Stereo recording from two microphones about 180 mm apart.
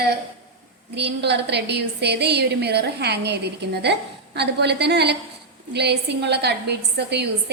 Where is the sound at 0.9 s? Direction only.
70° right (ahead or behind).